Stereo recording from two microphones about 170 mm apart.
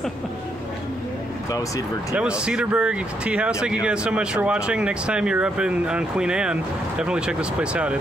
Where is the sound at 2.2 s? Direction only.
5° right (ahead or behind).